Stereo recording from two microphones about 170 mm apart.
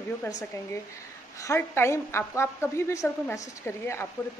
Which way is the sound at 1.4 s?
15° left (ahead or behind).